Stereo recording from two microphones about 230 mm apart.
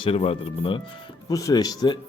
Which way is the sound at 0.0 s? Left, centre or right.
Left.